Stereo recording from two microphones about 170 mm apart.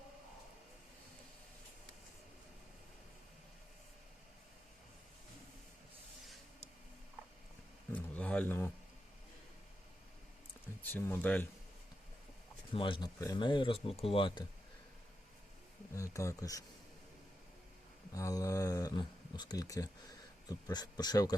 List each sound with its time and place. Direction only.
7.9 s a sound: 10° left (ahead or behind)
10.8 s speech: 10° left (ahead or behind)
12.7 s speech: 30° left (ahead or behind)
16.0 s speech: 20° left (ahead or behind)
18.1 s speech: 20° left (ahead or behind)